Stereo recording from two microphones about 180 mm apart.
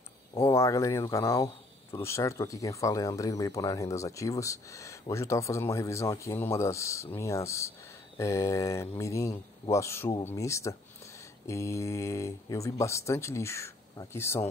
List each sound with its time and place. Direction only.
0.5 s speech: 15° left (ahead or behind)